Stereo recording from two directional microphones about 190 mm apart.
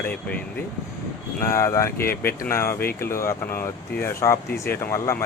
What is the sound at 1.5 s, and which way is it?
Speech, 15° left (ahead or behind).